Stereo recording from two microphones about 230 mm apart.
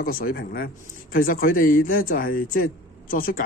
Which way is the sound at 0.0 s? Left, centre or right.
Left.